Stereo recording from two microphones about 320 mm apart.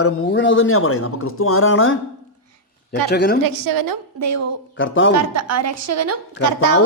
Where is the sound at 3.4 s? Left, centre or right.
Right.